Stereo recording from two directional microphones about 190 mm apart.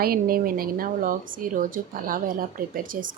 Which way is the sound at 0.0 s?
50° right (ahead or behind).